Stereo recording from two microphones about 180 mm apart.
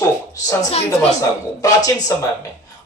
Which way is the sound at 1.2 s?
20° left (ahead or behind).